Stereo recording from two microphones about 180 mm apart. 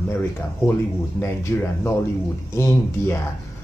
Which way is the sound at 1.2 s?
15° left (ahead or behind).